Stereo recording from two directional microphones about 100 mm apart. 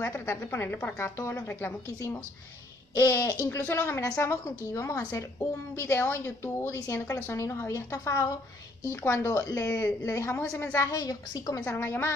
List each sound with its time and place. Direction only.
0.0 s a woman's voice: 25° left (ahead or behind)
11.6 s a woman's voice: 25° left (ahead or behind)